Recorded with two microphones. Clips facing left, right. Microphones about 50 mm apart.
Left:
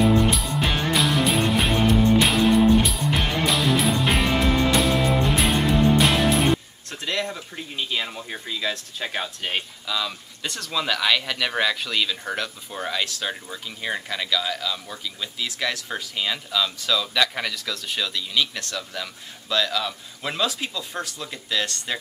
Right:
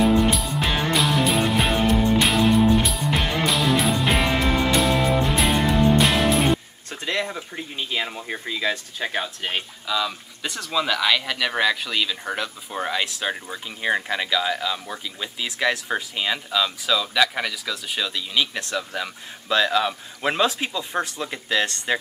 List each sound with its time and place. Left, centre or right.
0.0 s music: centre
7.1 s speech: centre